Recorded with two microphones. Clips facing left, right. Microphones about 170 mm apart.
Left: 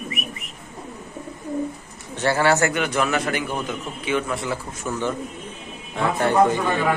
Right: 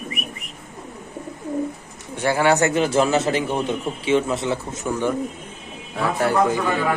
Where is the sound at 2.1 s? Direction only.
10° right (ahead or behind).